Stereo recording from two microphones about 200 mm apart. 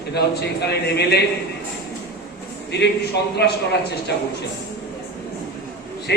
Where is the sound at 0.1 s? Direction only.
55° left (ahead or behind).